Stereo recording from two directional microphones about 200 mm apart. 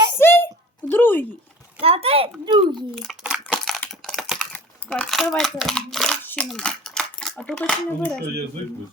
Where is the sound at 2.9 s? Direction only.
Centre (ahead or behind).